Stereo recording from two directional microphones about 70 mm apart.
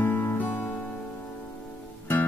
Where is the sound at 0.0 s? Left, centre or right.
Left.